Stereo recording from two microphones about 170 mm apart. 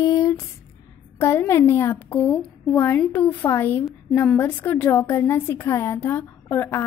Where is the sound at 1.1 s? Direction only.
15° left (ahead or behind).